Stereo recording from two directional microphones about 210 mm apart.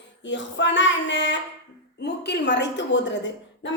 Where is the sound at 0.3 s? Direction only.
60° left (ahead or behind).